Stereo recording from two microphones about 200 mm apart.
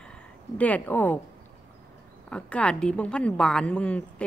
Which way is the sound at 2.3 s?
5° left (ahead or behind).